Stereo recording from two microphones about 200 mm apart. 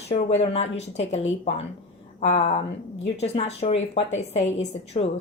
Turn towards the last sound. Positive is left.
turn(degrees=35)  # may be behind; listen again after turning